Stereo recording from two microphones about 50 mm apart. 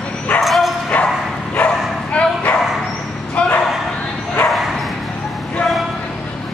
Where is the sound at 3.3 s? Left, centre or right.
Left.